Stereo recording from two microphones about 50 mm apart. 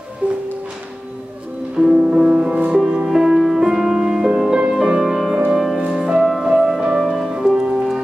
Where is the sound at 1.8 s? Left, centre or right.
Right.